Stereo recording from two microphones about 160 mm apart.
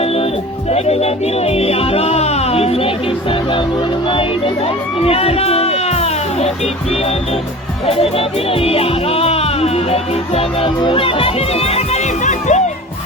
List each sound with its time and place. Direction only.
0.7 s speech: 40° left (ahead or behind)
4.1 s speech: 30° left (ahead or behind)
5.0 s music: 40° left (ahead or behind)
7.9 s speech: 35° left (ahead or behind)